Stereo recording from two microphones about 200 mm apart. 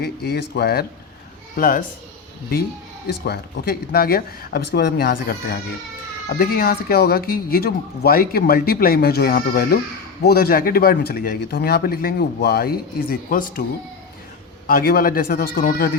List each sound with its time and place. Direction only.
0.0 s speech: 55° left (ahead or behind)
3.1 s speech: 55° left (ahead or behind)
14.7 s speech: 50° left (ahead or behind)